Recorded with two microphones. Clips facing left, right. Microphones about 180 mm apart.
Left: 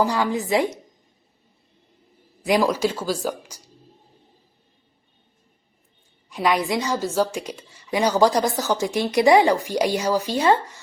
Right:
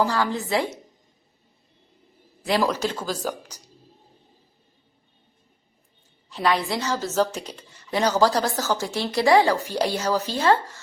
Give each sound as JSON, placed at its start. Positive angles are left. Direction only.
{"t": 0.0, "sound": "a woman's voice", "side_deg": 15}
{"t": 2.4, "sound": "a woman's voice", "side_deg": 15}
{"t": 6.3, "sound": "a woman's voice", "side_deg": 10}